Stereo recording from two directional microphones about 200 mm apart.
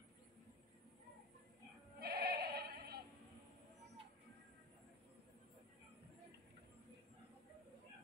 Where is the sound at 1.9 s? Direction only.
50° right (ahead or behind).